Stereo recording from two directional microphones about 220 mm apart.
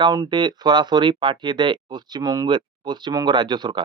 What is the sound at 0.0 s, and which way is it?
Speech, 20° right (ahead or behind).